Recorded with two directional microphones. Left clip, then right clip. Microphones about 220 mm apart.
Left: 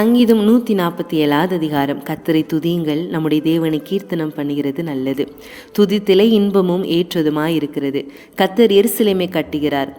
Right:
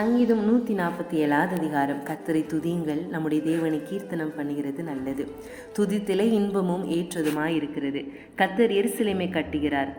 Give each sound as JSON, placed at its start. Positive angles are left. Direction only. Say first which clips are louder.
{"t": 0.0, "sound": "a woman's voice", "louder": "left 10 dB", "side_deg": 55}